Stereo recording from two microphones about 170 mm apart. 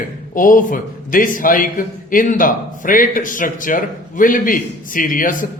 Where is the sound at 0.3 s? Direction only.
50° left (ahead or behind).